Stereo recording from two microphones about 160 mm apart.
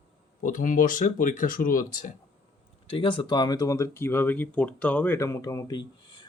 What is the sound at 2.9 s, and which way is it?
Speech, 30° left (ahead or behind).